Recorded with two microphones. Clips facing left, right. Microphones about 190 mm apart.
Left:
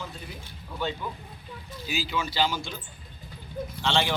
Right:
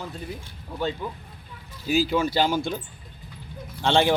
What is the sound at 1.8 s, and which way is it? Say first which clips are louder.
Speech: right 9 dB; 50° right (ahead or behind).